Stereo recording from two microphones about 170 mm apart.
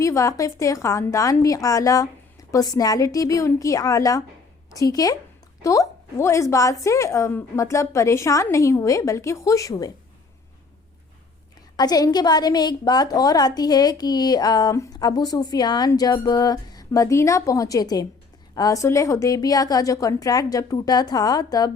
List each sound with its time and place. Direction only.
0.0 s a woman's voice: 20° left (ahead or behind)
11.8 s a woman's voice: 20° left (ahead or behind)